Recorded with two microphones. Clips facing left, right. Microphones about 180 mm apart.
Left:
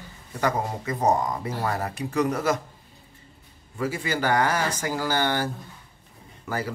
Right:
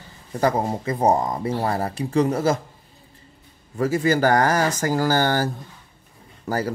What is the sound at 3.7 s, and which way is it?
Speech, 40° right (ahead or behind).